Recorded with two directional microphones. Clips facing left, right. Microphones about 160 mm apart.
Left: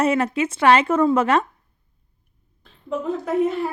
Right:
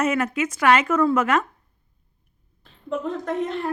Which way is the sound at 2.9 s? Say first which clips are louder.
Left 3 dB; 5° left (ahead or behind).